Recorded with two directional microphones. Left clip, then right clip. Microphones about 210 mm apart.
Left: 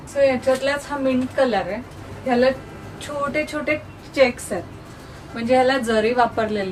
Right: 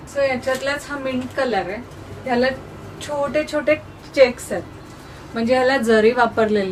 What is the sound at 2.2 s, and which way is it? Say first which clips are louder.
Speech: left 1 dB; 10° right (ahead or behind).